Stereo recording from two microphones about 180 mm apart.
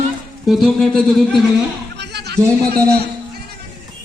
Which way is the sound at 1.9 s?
70° right (ahead or behind).